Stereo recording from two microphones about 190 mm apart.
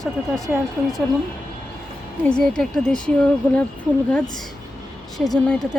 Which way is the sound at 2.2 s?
5° left (ahead or behind).